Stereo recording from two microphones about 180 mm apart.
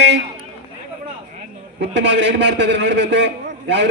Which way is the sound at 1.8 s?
80° right.